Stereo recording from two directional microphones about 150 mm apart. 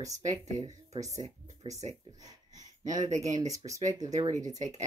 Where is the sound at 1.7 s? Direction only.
50° right (ahead or behind).